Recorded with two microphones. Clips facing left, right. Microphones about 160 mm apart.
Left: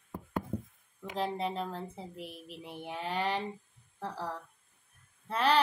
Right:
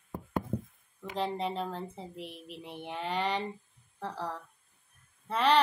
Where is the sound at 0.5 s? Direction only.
40° right (ahead or behind).